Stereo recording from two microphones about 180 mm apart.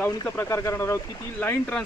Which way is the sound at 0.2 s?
15° left (ahead or behind).